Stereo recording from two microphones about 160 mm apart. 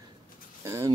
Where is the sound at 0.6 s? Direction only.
20° right (ahead or behind).